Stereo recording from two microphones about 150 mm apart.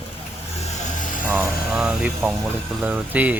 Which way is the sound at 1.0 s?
60° left (ahead or behind).